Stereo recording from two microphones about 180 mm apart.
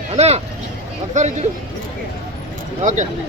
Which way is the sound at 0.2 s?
35° right (ahead or behind).